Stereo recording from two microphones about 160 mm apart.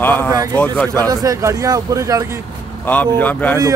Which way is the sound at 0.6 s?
10° left (ahead or behind).